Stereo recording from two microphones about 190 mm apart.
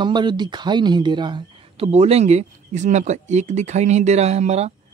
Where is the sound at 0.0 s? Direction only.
25° right (ahead or behind).